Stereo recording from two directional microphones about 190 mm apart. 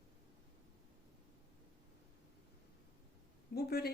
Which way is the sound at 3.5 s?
55° left (ahead or behind).